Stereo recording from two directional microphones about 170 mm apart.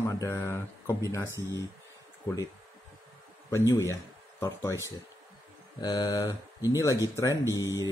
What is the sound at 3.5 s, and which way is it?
Speech, 15° left (ahead or behind).